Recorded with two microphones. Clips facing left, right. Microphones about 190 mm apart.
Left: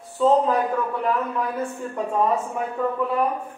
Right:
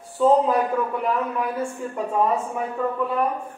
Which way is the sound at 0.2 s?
10° right (ahead or behind).